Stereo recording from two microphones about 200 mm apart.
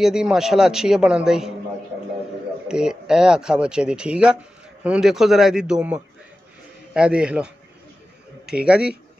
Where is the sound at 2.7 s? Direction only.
5° right (ahead or behind).